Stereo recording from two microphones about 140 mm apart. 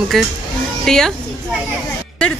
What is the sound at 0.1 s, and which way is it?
Speech, centre (ahead or behind).